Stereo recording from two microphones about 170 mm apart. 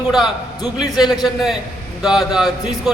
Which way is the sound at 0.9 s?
Centre (ahead or behind).